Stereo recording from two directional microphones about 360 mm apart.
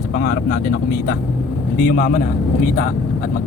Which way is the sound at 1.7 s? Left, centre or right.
Left.